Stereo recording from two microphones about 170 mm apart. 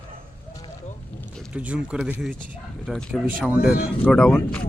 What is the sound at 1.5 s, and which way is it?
Speech, 5° right (ahead or behind).